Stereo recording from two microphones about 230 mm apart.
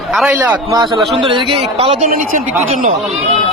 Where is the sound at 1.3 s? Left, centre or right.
Right.